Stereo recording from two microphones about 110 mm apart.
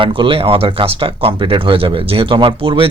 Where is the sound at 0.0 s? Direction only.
50° right (ahead or behind).